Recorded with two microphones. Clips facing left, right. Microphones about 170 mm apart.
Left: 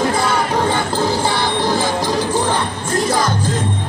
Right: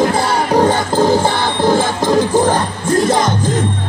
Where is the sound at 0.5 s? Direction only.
45° right (ahead or behind).